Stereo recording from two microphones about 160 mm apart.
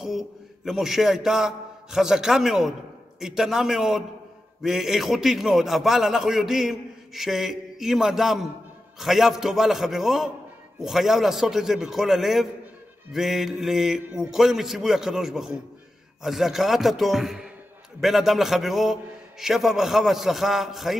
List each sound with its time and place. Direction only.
0.0 s a man's voice: centre (ahead or behind)